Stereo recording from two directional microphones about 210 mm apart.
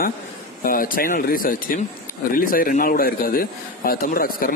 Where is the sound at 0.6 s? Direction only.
40° left (ahead or behind).